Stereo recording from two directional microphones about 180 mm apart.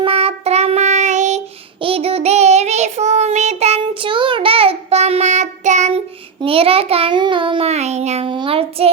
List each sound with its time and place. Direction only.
0.0 s child singing: 30° right (ahead or behind)